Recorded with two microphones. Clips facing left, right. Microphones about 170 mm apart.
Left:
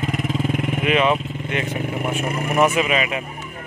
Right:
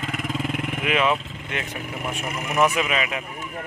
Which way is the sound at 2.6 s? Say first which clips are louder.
Left 3 dB; 5° left (ahead or behind).